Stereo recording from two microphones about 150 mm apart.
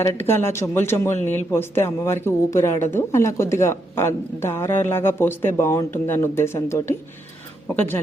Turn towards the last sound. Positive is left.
turn(degrees=15)  # may be behind; listen again after turning